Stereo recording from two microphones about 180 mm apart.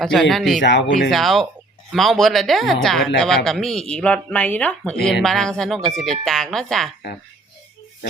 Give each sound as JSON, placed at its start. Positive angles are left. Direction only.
{"t": 0.0, "sound": "speech", "side_deg": 0}
{"t": 0.6, "sound": "speech", "side_deg": 80}
{"t": 1.1, "sound": "speech", "side_deg": 0}